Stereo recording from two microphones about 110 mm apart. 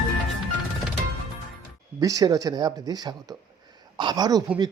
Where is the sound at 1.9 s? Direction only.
35° right (ahead or behind).